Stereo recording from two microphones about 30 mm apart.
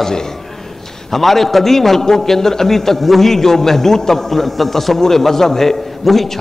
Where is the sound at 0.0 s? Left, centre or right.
Centre.